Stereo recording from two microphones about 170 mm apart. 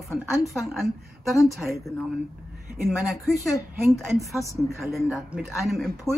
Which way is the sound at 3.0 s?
Centre (ahead or behind).